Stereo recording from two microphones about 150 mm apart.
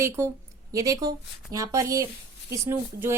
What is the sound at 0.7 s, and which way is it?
Speech, 25° right (ahead or behind).